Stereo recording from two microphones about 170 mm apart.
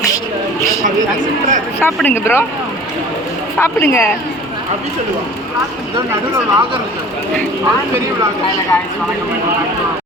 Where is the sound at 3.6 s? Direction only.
15° left (ahead or behind).